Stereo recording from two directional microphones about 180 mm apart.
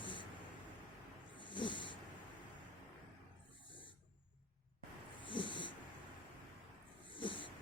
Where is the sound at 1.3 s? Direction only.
25° left (ahead or behind).